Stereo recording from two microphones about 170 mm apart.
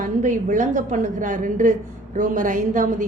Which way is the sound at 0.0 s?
45° right (ahead or behind).